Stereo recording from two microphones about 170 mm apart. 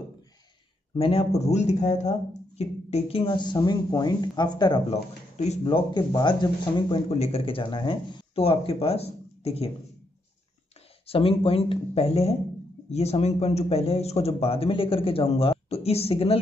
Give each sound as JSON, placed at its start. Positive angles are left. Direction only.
{"t": 0.9, "sound": "speech", "side_deg": 35}
{"t": 4.9, "sound": "speech", "side_deg": 40}
{"t": 11.1, "sound": "speech", "side_deg": 35}